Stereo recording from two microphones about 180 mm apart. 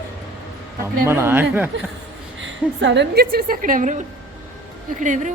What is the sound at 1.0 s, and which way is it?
Speech, 15° right (ahead or behind).